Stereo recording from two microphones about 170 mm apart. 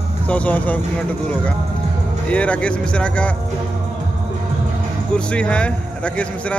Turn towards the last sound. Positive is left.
turn(degrees=5)  # may be behind; listen again after turning